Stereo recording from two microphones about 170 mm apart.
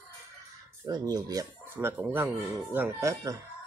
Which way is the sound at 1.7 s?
10° right (ahead or behind).